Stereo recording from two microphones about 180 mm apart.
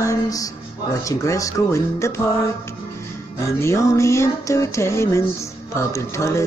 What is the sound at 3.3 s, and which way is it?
Music, 15° left (ahead or behind).